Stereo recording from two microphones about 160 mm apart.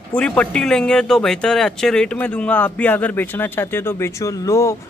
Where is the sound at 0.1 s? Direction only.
10° left (ahead or behind).